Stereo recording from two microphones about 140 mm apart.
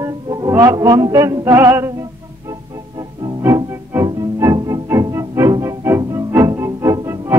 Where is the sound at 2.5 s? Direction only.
30° right (ahead or behind).